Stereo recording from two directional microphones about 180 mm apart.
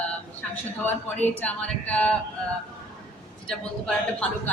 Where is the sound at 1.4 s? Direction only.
10° left (ahead or behind).